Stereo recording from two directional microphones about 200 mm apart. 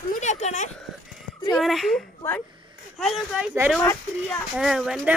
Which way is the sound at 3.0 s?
Centre (ahead or behind).